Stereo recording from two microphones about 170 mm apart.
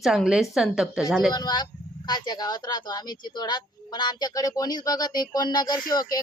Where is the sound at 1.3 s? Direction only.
25° left (ahead or behind).